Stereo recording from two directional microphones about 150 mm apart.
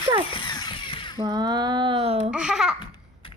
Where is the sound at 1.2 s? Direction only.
25° right (ahead or behind).